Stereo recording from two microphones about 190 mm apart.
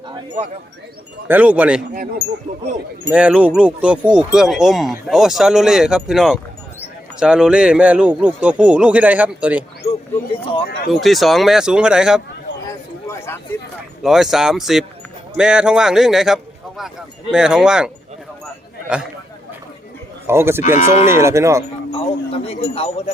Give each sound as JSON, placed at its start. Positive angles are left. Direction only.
{"t": 1.3, "sound": "speech", "side_deg": -5}
{"t": 1.9, "sound": "speech", "side_deg": -45}
{"t": 3.1, "sound": "speech", "side_deg": -5}
{"t": 10.3, "sound": "speech", "side_deg": 30}
{"t": 10.9, "sound": "speech", "side_deg": 0}
{"t": 13.1, "sound": "a sound", "side_deg": 10}
{"t": 14.0, "sound": "speech", "side_deg": 0}
{"t": 20.2, "sound": "speech", "side_deg": -15}
{"t": 21.9, "sound": "speech", "side_deg": 30}